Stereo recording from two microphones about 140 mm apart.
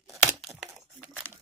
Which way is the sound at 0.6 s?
10° right (ahead or behind).